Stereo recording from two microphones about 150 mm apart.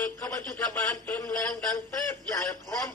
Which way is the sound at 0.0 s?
15° left (ahead or behind).